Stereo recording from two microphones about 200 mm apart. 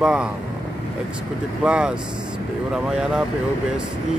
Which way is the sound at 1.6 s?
5° right (ahead or behind).